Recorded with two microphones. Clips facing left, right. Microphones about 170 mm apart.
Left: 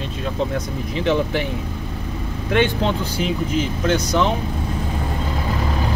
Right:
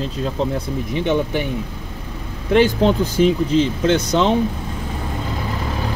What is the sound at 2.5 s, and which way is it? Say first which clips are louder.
Speech: right 5 dB; 40° right (ahead or behind).